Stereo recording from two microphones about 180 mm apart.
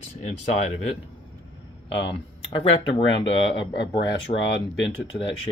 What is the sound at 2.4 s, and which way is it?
Speech, 30° left (ahead or behind).